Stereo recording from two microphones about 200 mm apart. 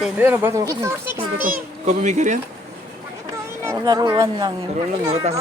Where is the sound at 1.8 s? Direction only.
35° right (ahead or behind).